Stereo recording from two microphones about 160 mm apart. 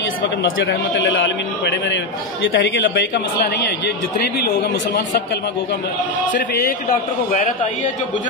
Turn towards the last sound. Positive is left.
turn(degrees=55)  # may be behind; listen again after turning